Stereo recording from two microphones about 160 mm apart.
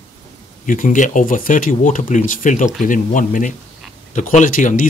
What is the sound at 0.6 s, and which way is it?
Speech, 55° left (ahead or behind).